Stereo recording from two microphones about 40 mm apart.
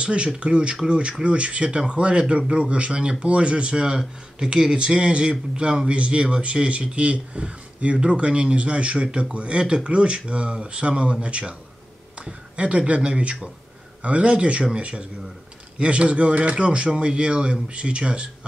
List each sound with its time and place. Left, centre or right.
0.0 s speech: right